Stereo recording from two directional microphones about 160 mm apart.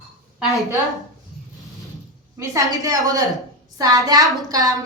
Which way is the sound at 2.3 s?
20° right (ahead or behind).